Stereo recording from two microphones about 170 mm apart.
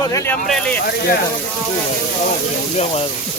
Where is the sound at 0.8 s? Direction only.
65° left (ahead or behind).